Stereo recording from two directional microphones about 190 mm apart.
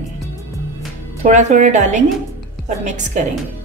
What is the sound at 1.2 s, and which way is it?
Speech, 40° right (ahead or behind).